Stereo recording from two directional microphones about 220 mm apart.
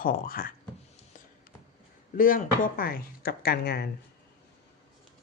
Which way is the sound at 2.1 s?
40° left (ahead or behind).